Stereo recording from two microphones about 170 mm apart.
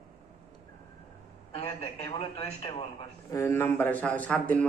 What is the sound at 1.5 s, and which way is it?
A man's voice, 35° left (ahead or behind).